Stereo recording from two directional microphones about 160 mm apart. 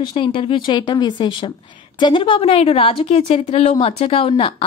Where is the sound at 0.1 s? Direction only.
35° left (ahead or behind).